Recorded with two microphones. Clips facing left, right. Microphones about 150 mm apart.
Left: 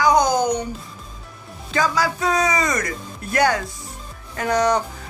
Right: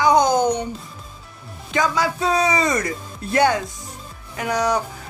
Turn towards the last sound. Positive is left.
turn(degrees=-10)  # may be behind; listen again after turning